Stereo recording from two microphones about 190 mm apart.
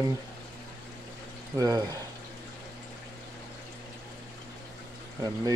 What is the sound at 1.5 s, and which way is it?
Speech, 20° right (ahead or behind).